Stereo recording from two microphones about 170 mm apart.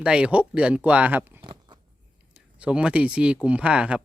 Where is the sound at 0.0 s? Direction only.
5° right (ahead or behind).